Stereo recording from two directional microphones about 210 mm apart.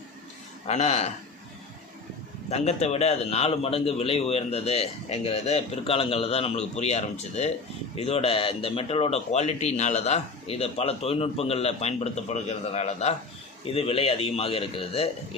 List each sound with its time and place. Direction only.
0.7 s speech: 30° left (ahead or behind)
2.5 s speech: 30° left (ahead or behind)